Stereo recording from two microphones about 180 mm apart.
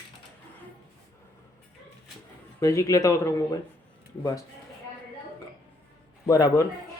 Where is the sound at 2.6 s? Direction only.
20° left (ahead or behind).